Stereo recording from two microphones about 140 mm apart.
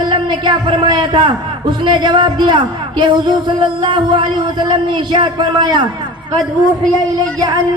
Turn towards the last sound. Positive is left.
turn(degrees=-30)  # may be behind; listen again after turning